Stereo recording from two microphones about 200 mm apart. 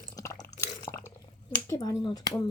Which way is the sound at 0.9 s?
15° left (ahead or behind).